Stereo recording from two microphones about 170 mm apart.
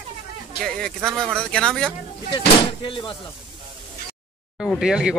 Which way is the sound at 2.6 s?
30° left (ahead or behind).